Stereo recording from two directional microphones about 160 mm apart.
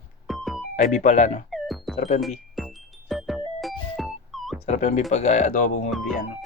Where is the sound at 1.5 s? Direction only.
Centre (ahead or behind).